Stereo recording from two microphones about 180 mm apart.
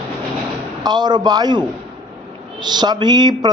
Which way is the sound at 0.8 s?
25° right (ahead or behind).